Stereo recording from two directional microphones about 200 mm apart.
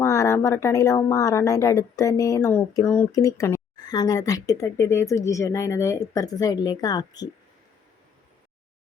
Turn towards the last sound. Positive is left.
turn(degrees=20)  # may be behind; listen again after turning